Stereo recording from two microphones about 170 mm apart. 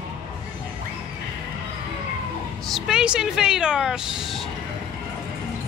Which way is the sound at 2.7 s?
Centre (ahead or behind).